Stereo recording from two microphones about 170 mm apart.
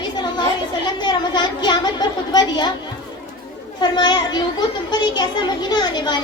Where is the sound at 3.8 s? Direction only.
25° left (ahead or behind).